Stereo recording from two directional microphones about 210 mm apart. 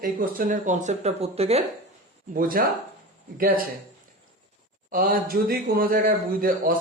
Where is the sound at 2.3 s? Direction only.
40° right (ahead or behind).